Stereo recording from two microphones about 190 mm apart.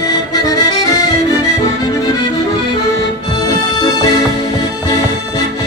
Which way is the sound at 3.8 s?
20° left (ahead or behind).